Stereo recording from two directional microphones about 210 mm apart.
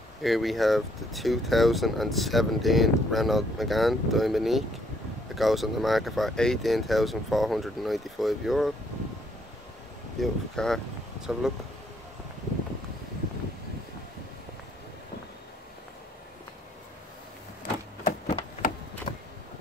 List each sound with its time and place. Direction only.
0.2 s speech: centre (ahead or behind)
10.2 s speech: centre (ahead or behind)
18.0 s a sound: 40° left (ahead or behind)